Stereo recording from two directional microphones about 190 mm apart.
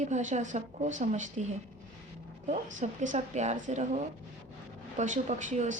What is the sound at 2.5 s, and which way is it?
A woman's voice, 40° right (ahead or behind).